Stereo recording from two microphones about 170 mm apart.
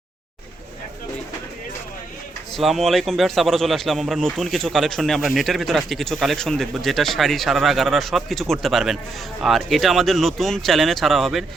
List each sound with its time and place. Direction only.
2.6 s speech: centre (ahead or behind)